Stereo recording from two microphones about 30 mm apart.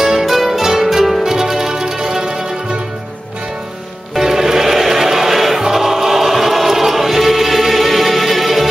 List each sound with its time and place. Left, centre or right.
0.0 s music: centre
0.9 s harp: centre
1.2 s music: centre
4.1 s music: centre
5.6 s choir: centre